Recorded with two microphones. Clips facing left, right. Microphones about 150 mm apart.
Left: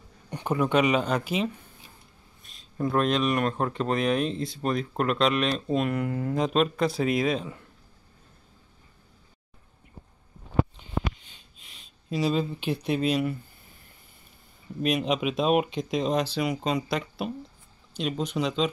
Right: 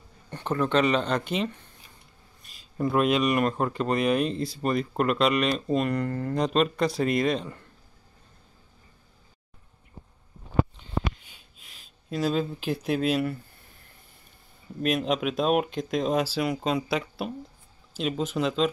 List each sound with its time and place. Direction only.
0.3 s speech: 10° left (ahead or behind)
11.2 s a sound: 5° right (ahead or behind)
14.8 s speech: centre (ahead or behind)